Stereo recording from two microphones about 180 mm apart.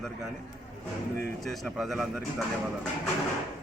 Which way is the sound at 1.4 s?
Centre (ahead or behind).